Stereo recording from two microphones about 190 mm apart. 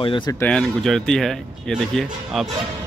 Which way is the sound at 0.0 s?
25° left (ahead or behind).